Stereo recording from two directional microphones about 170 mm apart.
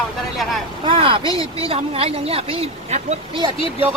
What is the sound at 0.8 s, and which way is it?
A woman's voice, 30° right (ahead or behind).